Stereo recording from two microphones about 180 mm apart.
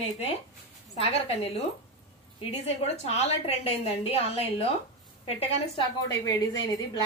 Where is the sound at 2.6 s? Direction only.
35° left (ahead or behind).